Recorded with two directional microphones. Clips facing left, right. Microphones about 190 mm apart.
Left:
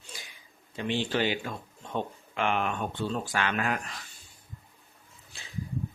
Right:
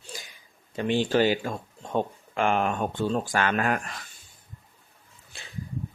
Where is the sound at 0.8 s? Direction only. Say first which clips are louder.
Right 6 dB; 45° right (ahead or behind).